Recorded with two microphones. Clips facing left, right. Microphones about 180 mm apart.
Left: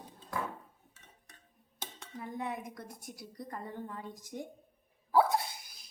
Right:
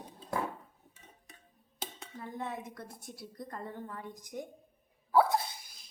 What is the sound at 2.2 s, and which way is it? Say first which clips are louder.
Speech: left 1 dB; 15° left (ahead or behind).